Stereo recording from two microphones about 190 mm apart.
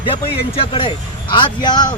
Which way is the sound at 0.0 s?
30° left (ahead or behind).